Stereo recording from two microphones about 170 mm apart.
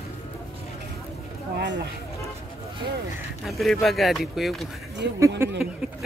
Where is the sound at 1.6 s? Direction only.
90° right.